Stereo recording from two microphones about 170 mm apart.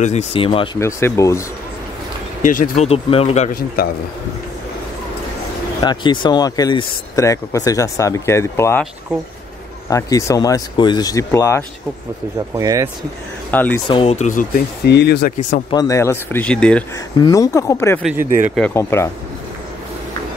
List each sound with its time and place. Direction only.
0.0 s speech: 40° left (ahead or behind)
0.7 s speech: 15° left (ahead or behind)
2.4 s speech: 50° left (ahead or behind); by 3.4 s 35° left (ahead or behind)
3.5 s a man's voice: 65° left (ahead or behind)
5.8 s speech: 25° left (ahead or behind)
9.8 s speech: 20° left (ahead or behind)
12.5 s speech: 20° right (ahead or behind)
13.5 s speech: 10° left (ahead or behind)
13.8 s speech: 35° left (ahead or behind)
14.9 s speech: 80° left
15.7 s speech: 20° left (ahead or behind)
17.2 s speech: 20° left (ahead or behind)
18.2 s speech: 50° right (ahead or behind)
18.7 s speech: 15° left (ahead or behind)